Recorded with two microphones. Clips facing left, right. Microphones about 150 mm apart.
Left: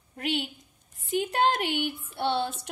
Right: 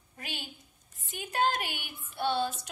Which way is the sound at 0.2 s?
65° left (ahead or behind).